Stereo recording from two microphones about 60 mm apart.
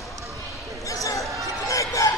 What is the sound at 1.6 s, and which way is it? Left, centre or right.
Chicken, left.